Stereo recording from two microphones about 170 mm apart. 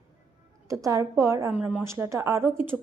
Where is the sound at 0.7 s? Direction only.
20° right (ahead or behind).